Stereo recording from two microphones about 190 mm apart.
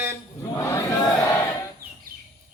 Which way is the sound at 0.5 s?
15° left (ahead or behind).